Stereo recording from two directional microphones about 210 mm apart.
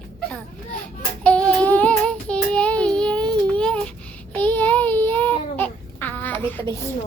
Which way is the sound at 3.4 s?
5° left (ahead or behind).